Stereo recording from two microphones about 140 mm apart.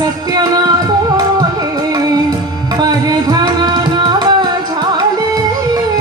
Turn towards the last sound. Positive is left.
turn(degrees=-30)  # may be behind; listen again after turning